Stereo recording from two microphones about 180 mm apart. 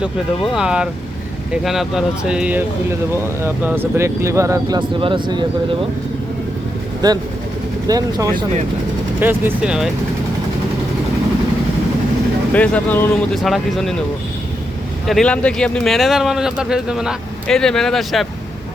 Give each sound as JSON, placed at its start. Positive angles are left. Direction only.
{"t": 0.0, "sound": "speech", "side_deg": -5}
{"t": 7.0, "sound": "speech", "side_deg": -20}
{"t": 9.2, "sound": "speech", "side_deg": -10}
{"t": 12.5, "sound": "speech", "side_deg": 10}
{"t": 15.0, "sound": "speech", "side_deg": 5}